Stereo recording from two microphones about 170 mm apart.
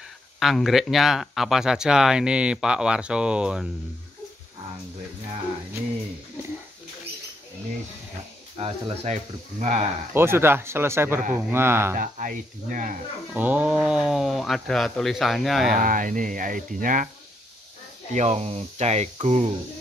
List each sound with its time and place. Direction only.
0.4 s speech: centre (ahead or behind)
8.5 s speech: 35° right (ahead or behind)
10.1 s speech: 15° right (ahead or behind)
12.0 s speech: 50° right (ahead or behind)
13.3 s speech: 10° right (ahead or behind)
15.8 s speech: 50° right (ahead or behind)
18.1 s speech: 40° right (ahead or behind)